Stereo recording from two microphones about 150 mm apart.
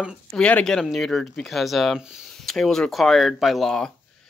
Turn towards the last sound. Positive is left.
turn(degrees=5)  # may be behind; listen again after turning